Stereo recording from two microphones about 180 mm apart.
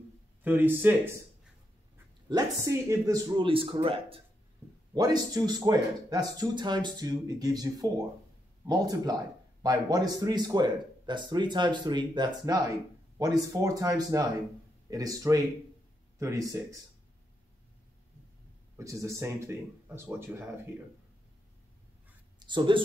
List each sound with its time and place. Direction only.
0.4 s speech: 10° right (ahead or behind)
2.2 s speech: 20° right (ahead or behind)
4.9 s speech: 20° right (ahead or behind)
18.8 s speech: 15° right (ahead or behind)
22.4 s speech: 25° right (ahead or behind)